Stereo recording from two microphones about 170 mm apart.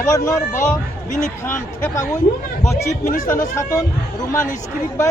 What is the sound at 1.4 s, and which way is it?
Speech, 15° left (ahead or behind).